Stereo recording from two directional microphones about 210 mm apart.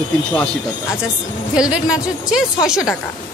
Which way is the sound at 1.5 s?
5° right (ahead or behind).